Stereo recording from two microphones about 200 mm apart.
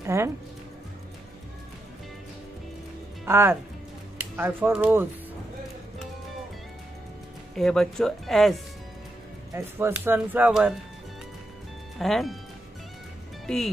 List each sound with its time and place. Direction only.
0.0 s speech: 15° right (ahead or behind)
3.3 s speech: 10° right (ahead or behind)
7.5 s speech: centre (ahead or behind)
9.5 s speech: 15° right (ahead or behind)
12.0 s speech: centre (ahead or behind)